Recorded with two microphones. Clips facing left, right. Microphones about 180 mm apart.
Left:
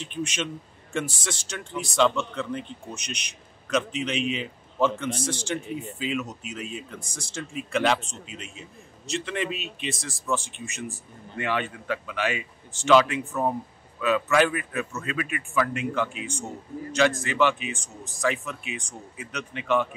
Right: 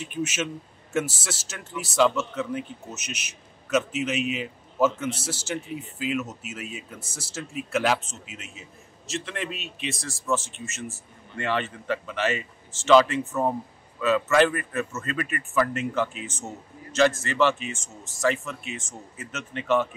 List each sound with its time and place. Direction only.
0.0 s a man's voice: 5° right (ahead or behind)
11.3 s a man's voice: 10° left (ahead or behind)